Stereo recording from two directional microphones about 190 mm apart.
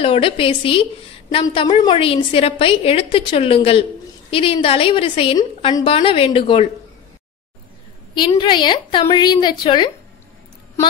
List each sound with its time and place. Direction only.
0.0 s a woman's voice: 30° left (ahead or behind)
8.1 s a woman's voice: 25° left (ahead or behind)